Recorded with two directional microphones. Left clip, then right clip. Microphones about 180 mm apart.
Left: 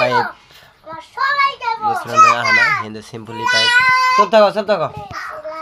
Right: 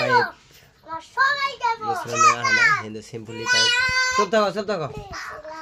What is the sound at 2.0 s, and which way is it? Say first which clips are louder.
Speech: left 7 dB; 15° right (ahead or behind).